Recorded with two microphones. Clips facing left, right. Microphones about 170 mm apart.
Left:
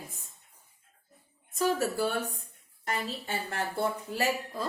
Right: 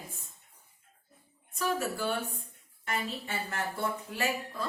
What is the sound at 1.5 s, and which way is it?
Speech, 40° left (ahead or behind).